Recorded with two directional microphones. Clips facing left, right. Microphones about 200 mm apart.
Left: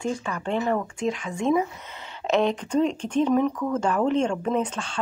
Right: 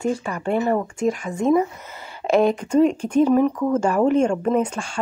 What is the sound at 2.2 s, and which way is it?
Speech, 10° right (ahead or behind).